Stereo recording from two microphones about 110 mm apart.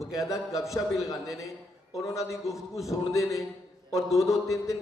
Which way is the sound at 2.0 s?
30° left (ahead or behind).